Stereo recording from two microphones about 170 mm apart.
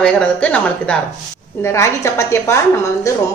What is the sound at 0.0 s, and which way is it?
A woman's voice, 5° left (ahead or behind).